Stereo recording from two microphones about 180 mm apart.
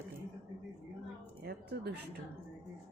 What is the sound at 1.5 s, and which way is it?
Speech, 65° right (ahead or behind).